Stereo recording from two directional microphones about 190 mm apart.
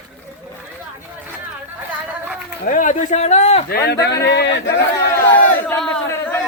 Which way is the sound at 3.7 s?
55° left (ahead or behind).